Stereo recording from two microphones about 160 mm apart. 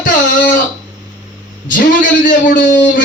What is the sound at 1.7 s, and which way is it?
A man's voice, 55° left (ahead or behind).